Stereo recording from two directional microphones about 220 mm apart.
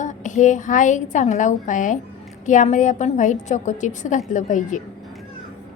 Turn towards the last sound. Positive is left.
turn(degrees=35)  # may be behind; listen again after turning